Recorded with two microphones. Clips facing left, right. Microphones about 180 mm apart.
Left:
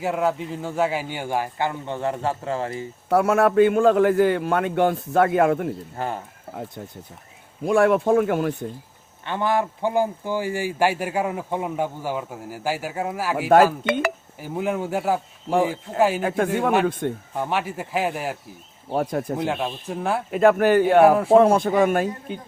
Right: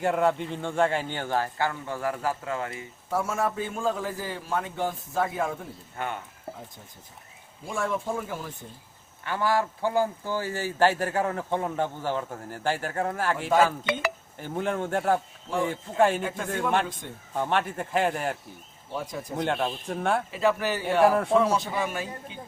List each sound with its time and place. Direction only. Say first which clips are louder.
0.0 s speech: left 1 dB; 5° left (ahead or behind); by 2.9 s 30° left (ahead or behind)
3.1 s a man's voice: left 9 dB; 70° left (ahead or behind)
6.0 s speech: left 3 dB; 35° left (ahead or behind)
6.6 s a man's voice: left 11 dB; 70° left (ahead or behind)
9.2 s speech: left 3 dB; 20° left (ahead or behind)
13.8 s speech: left 6 dB; 50° left (ahead or behind)
14.3 s speech: left 1 dB; 5° left (ahead or behind)
15.4 s speech: left 7 dB; 60° left (ahead or behind)
16.0 s speech: left 2 dB; 5° left (ahead or behind)
16.2 s speech: left 8 dB; 60° left (ahead or behind)
17.3 s speech: left 1 dB; 5° left (ahead or behind)
18.9 s speech: left 10 dB; 60° left (ahead or behind)
19.4 s speech: left 2 dB; 5° left (ahead or behind)
20.3 s speech: left 9 dB; 55° left (ahead or behind)